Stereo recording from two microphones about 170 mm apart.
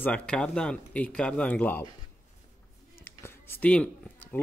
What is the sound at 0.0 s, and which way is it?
Speech, 5° left (ahead or behind).